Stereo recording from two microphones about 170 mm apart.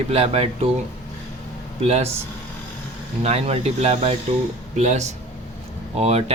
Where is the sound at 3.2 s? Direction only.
35° right (ahead or behind).